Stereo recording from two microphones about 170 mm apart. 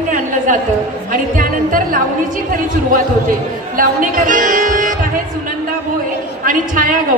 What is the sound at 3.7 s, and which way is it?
Music, 55° right (ahead or behind).